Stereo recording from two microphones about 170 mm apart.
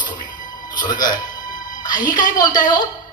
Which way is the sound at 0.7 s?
25° left (ahead or behind).